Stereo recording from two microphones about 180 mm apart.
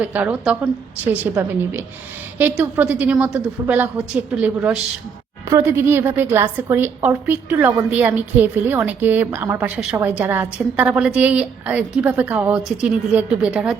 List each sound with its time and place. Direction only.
0.0 s a woman's voice: 10° right (ahead or behind)